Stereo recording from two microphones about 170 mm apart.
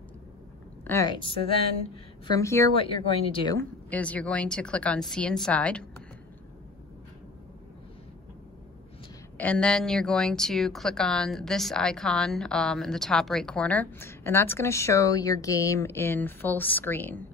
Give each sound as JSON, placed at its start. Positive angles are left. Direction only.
{"t": 0.8, "sound": "a woman's voice", "side_deg": 20}
{"t": 2.7, "sound": "speech", "side_deg": 30}
{"t": 3.5, "sound": "a woman's voice", "side_deg": 10}
{"t": 9.4, "sound": "speech", "side_deg": 5}